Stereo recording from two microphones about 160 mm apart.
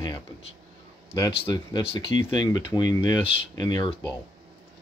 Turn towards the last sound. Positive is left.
turn(degrees=25)  # may be behind; listen again after turning